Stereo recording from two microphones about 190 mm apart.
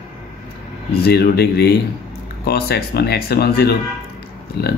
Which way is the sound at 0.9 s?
55° left (ahead or behind).